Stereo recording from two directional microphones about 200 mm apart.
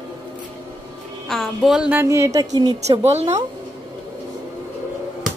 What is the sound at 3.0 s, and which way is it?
Speech, 35° right (ahead or behind).